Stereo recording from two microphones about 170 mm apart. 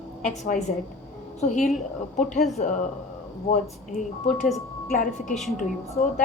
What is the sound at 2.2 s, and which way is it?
A woman's voice, 45° left (ahead or behind).